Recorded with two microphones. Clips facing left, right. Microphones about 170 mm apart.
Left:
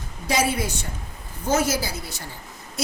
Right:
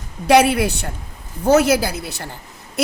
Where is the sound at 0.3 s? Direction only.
70° right (ahead or behind).